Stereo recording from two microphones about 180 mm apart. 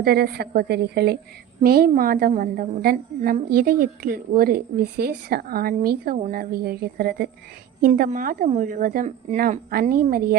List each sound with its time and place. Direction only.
0.0 s a woman's voice: 60° right (ahead or behind)